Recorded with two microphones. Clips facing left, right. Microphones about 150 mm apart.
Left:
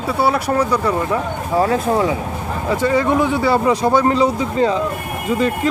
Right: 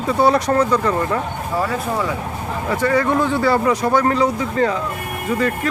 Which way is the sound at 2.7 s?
20° left (ahead or behind).